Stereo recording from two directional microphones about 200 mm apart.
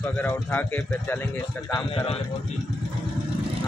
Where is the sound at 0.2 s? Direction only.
10° left (ahead or behind).